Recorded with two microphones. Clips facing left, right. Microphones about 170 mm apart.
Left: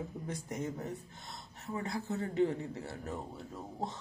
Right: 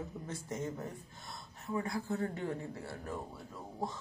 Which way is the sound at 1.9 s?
20° left (ahead or behind).